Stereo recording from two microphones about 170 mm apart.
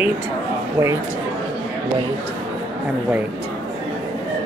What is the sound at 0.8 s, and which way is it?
Speech, 20° right (ahead or behind).